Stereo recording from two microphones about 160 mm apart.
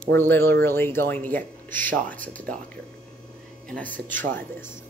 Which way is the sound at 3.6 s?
10° left (ahead or behind).